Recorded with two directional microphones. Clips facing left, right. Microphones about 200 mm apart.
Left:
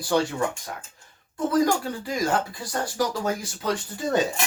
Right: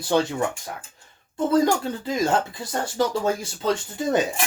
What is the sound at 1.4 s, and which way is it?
Speech, 25° right (ahead or behind).